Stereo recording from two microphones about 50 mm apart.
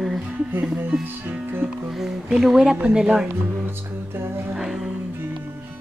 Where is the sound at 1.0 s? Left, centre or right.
Right.